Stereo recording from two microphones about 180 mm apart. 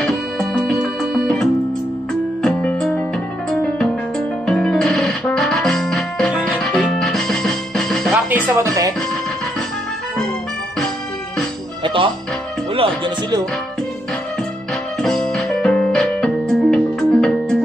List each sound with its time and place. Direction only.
0.0 s music: centre (ahead or behind)
4.5 s music: 5° left (ahead or behind)
8.3 s speech: 10° right (ahead or behind)
11.8 s music: 30° right (ahead or behind)
15.0 s keyboard: 5° left (ahead or behind)